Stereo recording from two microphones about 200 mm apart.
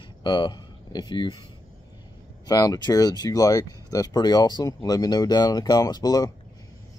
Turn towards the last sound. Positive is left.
turn(degrees=20)  # may be behind; listen again after turning